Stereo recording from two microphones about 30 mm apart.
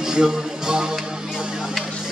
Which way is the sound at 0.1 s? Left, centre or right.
Right.